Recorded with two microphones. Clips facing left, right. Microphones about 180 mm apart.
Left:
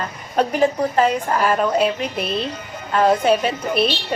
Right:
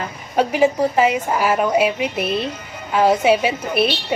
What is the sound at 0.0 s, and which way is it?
Speech, 10° right (ahead or behind).